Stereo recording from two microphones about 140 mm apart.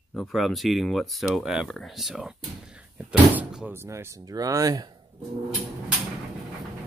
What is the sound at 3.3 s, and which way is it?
Speech, 10° right (ahead or behind).